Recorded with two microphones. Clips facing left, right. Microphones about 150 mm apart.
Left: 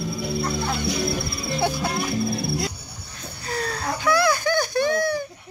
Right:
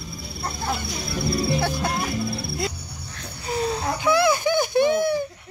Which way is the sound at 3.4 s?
20° right (ahead or behind).